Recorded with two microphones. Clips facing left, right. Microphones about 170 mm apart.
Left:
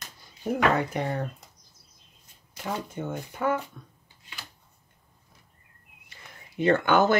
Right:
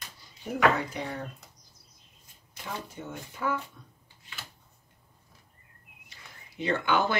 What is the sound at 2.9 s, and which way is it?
Speech, 55° left (ahead or behind).